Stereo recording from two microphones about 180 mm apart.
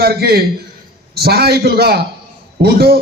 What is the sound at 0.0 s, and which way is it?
A man's voice, 60° right (ahead or behind).